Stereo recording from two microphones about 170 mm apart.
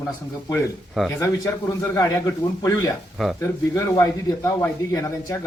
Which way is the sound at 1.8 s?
15° left (ahead or behind).